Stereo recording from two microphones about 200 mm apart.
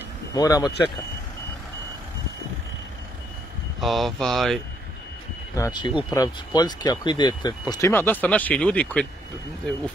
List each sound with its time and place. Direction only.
0.4 s speech: 20° left (ahead or behind)
3.8 s speech: centre (ahead or behind)
5.6 s speech: 20° left (ahead or behind)